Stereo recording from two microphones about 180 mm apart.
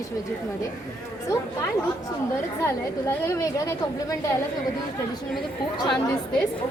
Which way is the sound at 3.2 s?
15° left (ahead or behind).